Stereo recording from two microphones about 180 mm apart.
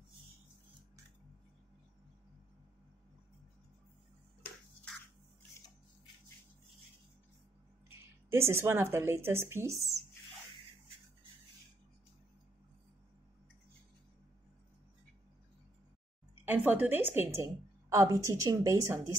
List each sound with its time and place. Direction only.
7.9 s speech: 15° right (ahead or behind)
16.4 s a woman's voice: 10° right (ahead or behind)